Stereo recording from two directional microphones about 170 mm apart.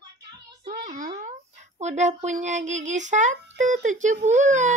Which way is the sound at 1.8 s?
45° right (ahead or behind).